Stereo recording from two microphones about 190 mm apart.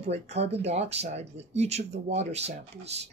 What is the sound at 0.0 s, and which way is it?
Speech, 35° right (ahead or behind).